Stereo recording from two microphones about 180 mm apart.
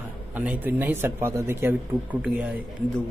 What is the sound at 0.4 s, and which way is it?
Speech, 10° right (ahead or behind).